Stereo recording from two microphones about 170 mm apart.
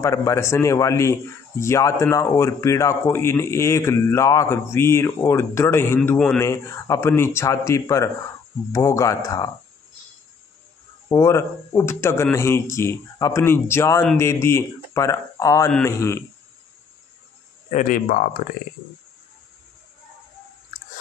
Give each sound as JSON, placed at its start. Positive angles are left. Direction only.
{"t": 0.0, "sound": "speech", "side_deg": 20}
{"t": 6.4, "sound": "speech", "side_deg": 15}
{"t": 11.1, "sound": "speech", "side_deg": 20}
{"t": 17.7, "sound": "speech", "side_deg": 50}